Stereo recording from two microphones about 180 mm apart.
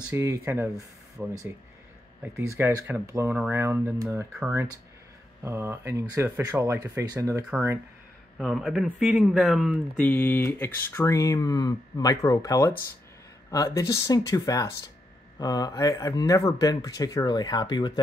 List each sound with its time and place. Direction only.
0.1 s speech: 15° right (ahead or behind)
2.2 s speech: 10° right (ahead or behind)
8.4 s speech: centre (ahead or behind); by 17.9 s 25° left (ahead or behind)